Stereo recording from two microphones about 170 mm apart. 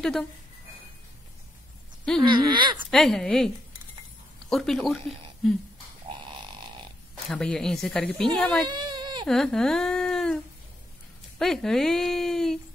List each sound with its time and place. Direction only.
2.2 s speech: 30° right (ahead or behind)
2.9 s speech: 5° left (ahead or behind)
7.2 s speech: 5° left (ahead or behind)
8.6 s a sound: 25° right (ahead or behind)
9.2 s speech: 5° left (ahead or behind)